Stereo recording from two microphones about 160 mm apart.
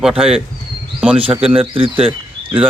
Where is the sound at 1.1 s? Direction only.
35° right (ahead or behind).